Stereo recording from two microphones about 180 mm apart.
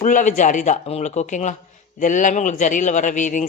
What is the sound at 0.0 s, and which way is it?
Speech, 45° left (ahead or behind).